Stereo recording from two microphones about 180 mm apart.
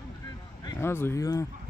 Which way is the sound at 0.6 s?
15° left (ahead or behind).